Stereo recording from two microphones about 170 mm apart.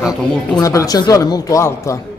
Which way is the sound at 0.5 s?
20° left (ahead or behind).